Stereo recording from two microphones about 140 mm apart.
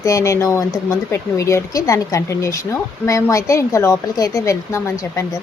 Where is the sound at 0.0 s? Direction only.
20° left (ahead or behind).